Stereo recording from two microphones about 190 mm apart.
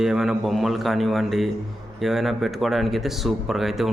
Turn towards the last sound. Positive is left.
turn(degrees=0)  # may be behind; listen again after turning